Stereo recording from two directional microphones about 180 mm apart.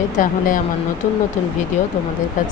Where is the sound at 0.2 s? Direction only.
45° left (ahead or behind).